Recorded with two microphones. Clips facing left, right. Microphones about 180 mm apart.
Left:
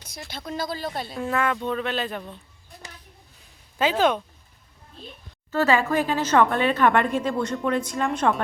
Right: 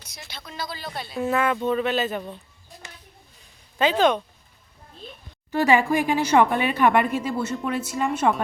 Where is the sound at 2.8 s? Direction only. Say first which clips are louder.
Left 1 dB; 35° left (ahead or behind).